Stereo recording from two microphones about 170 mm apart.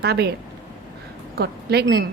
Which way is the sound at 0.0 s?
70° right (ahead or behind).